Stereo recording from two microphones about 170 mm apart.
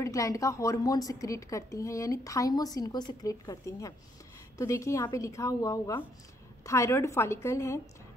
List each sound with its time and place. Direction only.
0.0 s a woman's voice: 20° left (ahead or behind)